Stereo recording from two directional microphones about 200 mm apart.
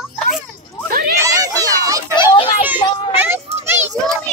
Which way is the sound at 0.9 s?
45° right (ahead or behind).